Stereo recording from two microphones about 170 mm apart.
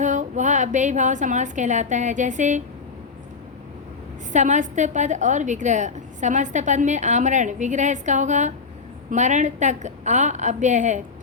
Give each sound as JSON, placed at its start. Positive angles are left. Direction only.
{"t": 0.0, "sound": "a woman's voice", "side_deg": -45}
{"t": 4.3, "sound": "a woman's voice", "side_deg": -45}